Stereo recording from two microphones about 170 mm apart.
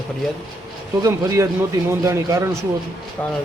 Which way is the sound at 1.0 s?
15° right (ahead or behind).